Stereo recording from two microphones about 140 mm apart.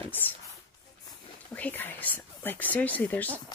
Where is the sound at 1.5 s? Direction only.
10° left (ahead or behind).